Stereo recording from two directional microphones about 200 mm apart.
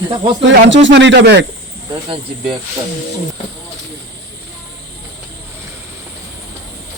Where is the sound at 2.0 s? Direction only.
25° right (ahead or behind).